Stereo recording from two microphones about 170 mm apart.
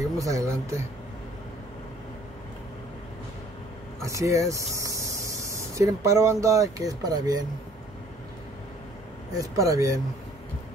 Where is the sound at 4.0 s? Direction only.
20° right (ahead or behind).